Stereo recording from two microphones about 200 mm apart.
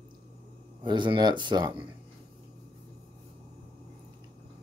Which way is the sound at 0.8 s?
20° right (ahead or behind).